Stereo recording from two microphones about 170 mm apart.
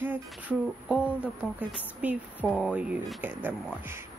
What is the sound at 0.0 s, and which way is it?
Speech, 10° right (ahead or behind).